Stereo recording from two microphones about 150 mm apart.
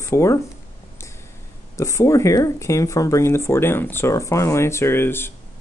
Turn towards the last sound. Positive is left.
turn(degrees=15)  # may be behind; listen again after turning